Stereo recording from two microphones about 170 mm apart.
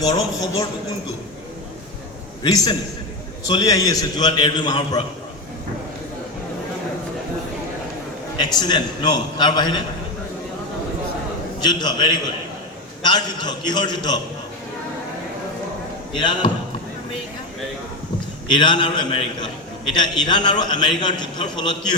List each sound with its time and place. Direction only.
0.0 s a man's voice: 20° left (ahead or behind)
2.4 s a man's voice: 25° left (ahead or behind)
8.4 s a man's voice: 25° left (ahead or behind)
11.6 s a man's voice: 25° left (ahead or behind)
16.1 s a man's voice: 25° left (ahead or behind)
18.4 s a man's voice: 25° left (ahead or behind)